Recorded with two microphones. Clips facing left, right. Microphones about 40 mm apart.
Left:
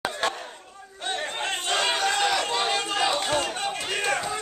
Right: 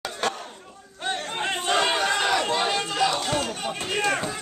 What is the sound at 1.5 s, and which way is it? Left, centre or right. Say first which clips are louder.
Chatter: right 3 dB; centre.